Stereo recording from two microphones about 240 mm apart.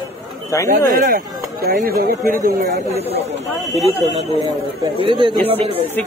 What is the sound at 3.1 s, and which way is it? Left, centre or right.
A man's voice, right.